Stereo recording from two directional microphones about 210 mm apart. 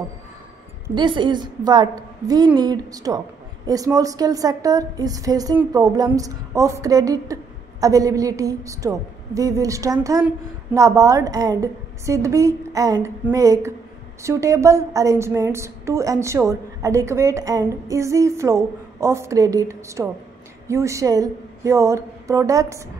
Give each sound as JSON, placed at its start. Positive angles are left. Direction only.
{"t": 0.9, "sound": "a woman's voice", "side_deg": -20}